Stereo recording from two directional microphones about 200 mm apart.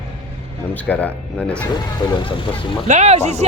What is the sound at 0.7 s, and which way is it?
Speech, 5° left (ahead or behind).